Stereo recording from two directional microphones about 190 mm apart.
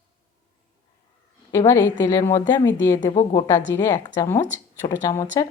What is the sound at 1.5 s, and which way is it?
A woman's voice, 20° left (ahead or behind).